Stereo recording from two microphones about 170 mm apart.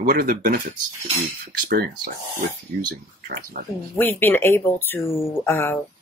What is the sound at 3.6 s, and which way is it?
Speech, 50° right (ahead or behind).